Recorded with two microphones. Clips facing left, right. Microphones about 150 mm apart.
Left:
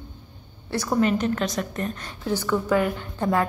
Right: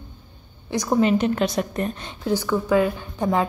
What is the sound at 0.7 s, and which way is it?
A woman's voice, 15° right (ahead or behind).